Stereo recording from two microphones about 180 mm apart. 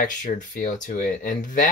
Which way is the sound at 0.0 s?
45° left (ahead or behind).